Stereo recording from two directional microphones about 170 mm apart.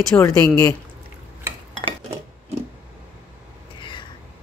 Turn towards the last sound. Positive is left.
turn(degrees=30)  # may be behind; listen again after turning